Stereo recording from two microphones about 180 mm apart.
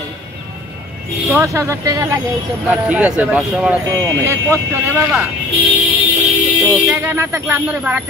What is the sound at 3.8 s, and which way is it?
Speech, 15° right (ahead or behind).